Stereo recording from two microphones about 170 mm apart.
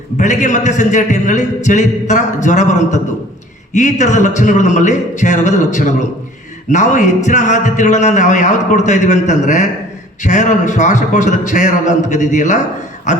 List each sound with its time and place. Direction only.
0.2 s a man's voice: 45° left (ahead or behind)